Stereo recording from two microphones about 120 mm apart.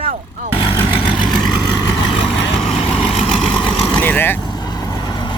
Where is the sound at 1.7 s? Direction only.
35° left (ahead or behind).